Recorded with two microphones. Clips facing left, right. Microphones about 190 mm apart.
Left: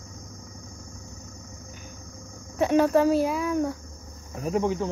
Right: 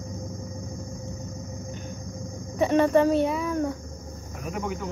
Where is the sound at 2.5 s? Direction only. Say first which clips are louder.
Even; centre (ahead or behind).